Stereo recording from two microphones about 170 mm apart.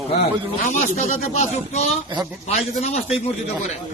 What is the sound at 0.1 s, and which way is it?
Speech, 40° left (ahead or behind).